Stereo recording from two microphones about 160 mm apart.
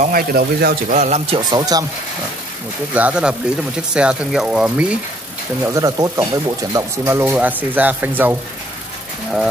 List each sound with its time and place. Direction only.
0.0 s speech: 65° right (ahead or behind)
0.9 s a man's voice: 45° right (ahead or behind)
1.5 s speech: 25° right (ahead or behind)
2.9 s speech: 10° right (ahead or behind)
5.8 s speech: 20° right (ahead or behind)